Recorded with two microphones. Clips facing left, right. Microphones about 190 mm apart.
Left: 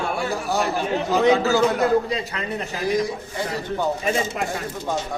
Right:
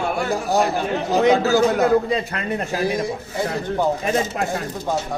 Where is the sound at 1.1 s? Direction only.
45° right (ahead or behind).